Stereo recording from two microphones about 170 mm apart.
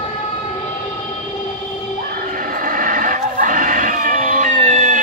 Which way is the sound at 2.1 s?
55° right (ahead or behind).